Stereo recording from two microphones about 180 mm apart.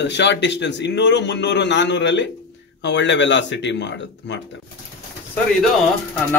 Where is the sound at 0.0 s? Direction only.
75° left (ahead or behind).